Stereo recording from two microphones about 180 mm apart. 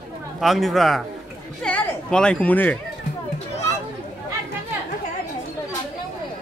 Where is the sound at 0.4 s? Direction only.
Centre (ahead or behind).